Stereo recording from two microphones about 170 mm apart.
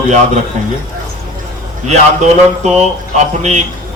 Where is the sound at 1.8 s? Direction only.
40° right (ahead or behind).